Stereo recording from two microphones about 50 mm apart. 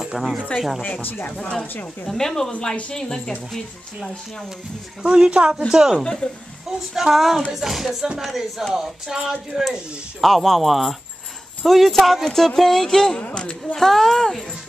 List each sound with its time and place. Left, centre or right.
0.0 s speech: centre
1.0 s speech: left
1.4 s speech: left
2.0 s speech: centre
3.0 s speech: centre
5.0 s speech: centre
10.2 s speech: centre
13.2 s speech: left
13.7 s speech: centre